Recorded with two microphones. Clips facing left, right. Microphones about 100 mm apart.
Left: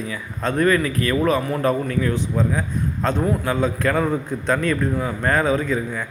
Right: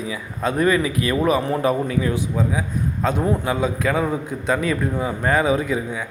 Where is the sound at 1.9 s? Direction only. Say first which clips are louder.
Even; 10° right (ahead or behind).